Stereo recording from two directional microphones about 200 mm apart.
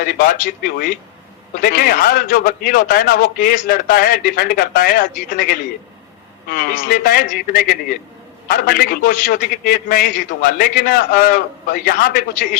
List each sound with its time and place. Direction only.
0.0 s a man's voice: 50° left (ahead or behind)